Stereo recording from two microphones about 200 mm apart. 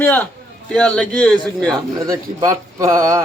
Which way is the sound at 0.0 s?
10° left (ahead or behind).